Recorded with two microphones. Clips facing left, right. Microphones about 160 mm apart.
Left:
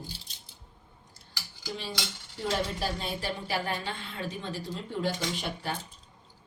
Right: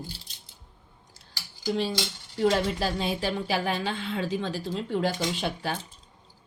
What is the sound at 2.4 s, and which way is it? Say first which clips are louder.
A woman's voice: right 7 dB; 90° right.